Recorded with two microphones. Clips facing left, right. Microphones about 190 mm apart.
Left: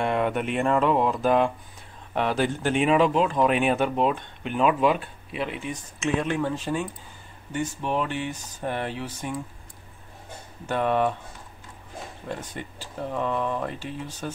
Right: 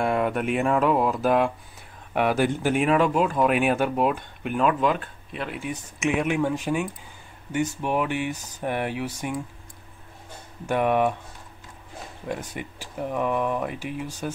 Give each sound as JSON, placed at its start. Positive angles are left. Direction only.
{"t": 0.0, "sound": "speech", "side_deg": 0}
{"t": 4.6, "sound": "speech", "side_deg": 5}
{"t": 5.9, "sound": "speech", "side_deg": -15}
{"t": 10.7, "sound": "speech", "side_deg": -15}
{"t": 12.3, "sound": "speech", "side_deg": -10}